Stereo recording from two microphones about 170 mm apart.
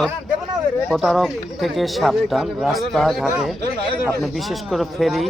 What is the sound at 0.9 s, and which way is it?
Speech, centre (ahead or behind).